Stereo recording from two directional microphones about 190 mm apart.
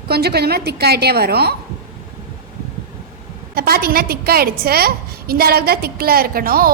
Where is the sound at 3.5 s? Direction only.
50° right (ahead or behind).